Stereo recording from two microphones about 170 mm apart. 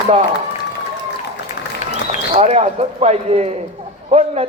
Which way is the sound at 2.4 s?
40° right (ahead or behind).